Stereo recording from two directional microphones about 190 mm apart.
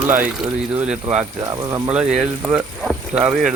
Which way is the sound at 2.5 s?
5° right (ahead or behind).